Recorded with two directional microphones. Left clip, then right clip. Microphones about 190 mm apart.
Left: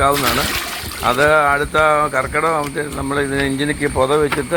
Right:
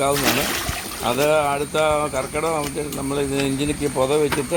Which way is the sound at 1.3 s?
40° left (ahead or behind).